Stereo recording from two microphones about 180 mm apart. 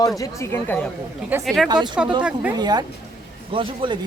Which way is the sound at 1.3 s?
10° right (ahead or behind).